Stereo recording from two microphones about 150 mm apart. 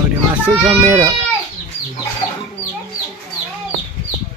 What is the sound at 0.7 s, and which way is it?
Bird, 15° right (ahead or behind).